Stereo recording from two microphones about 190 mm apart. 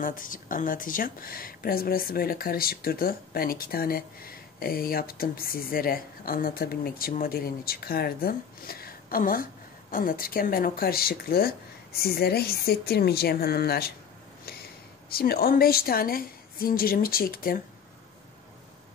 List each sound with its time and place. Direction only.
0.0 s speech: 45° left (ahead or behind)
15.0 s speech: 55° left (ahead or behind)